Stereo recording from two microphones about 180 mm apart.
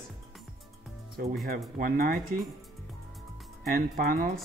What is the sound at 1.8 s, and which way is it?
Speech, 50° right (ahead or behind).